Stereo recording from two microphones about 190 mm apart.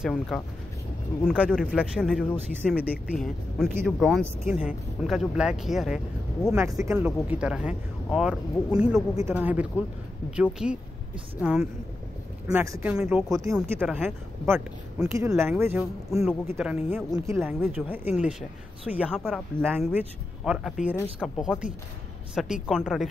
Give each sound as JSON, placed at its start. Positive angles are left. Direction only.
{"t": 0.0, "sound": "speech", "side_deg": 0}
{"t": 1.5, "sound": "speech", "side_deg": 0}
{"t": 6.6, "sound": "speech", "side_deg": -15}
{"t": 7.0, "sound": "speech", "side_deg": -5}
{"t": 12.4, "sound": "speech", "side_deg": -15}
{"t": 13.3, "sound": "speech", "side_deg": -20}
{"t": 13.6, "sound": "speech", "side_deg": -5}